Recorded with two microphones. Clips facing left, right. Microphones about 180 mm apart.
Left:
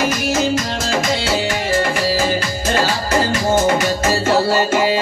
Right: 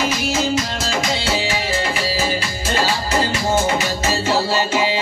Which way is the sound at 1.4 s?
50° left (ahead or behind).